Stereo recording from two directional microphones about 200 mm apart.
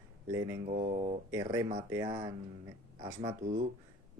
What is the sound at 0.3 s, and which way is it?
Speech, 15° right (ahead or behind).